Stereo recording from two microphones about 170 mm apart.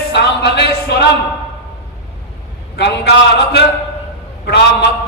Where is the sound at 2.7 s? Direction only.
80° left.